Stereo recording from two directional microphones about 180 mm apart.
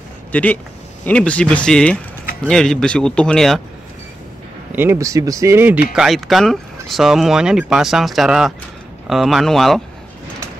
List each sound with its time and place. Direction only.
0.3 s speech: 10° left (ahead or behind)
4.7 s speech: 15° right (ahead or behind)
5.9 s speech: centre (ahead or behind)